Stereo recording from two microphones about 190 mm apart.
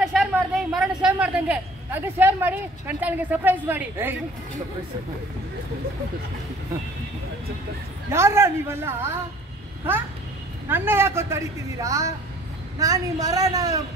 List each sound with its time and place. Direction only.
0.0 s speech: 5° right (ahead or behind)
8.1 s a woman's voice: 15° right (ahead or behind)
10.7 s a woman's voice: 10° right (ahead or behind)